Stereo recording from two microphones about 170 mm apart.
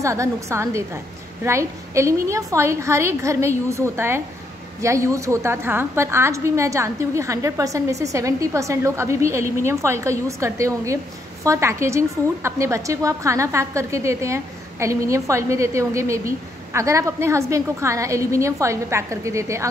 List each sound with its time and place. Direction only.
0.0 s a woman's voice: 15° right (ahead or behind)